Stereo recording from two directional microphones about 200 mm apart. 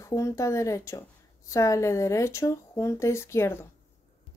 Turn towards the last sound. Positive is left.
turn(degrees=10)  # may be behind; listen again after turning